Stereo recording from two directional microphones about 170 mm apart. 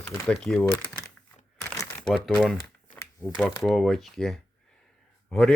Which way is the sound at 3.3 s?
Centre (ahead or behind).